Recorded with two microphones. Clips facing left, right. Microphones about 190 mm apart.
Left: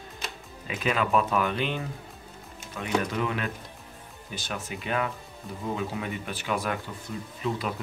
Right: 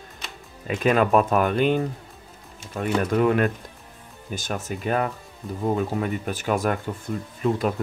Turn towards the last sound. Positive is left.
turn(degrees=-45)  # may be behind; listen again after turning